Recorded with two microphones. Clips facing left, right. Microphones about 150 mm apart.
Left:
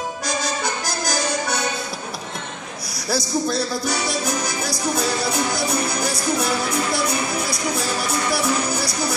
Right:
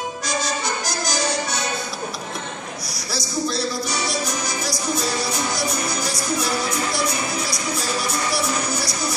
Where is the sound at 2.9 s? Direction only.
55° left (ahead or behind).